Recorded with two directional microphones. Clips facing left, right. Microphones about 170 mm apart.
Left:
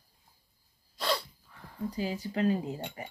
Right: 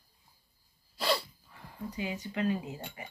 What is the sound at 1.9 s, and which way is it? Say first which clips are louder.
Speech: left 3 dB; 35° left (ahead or behind).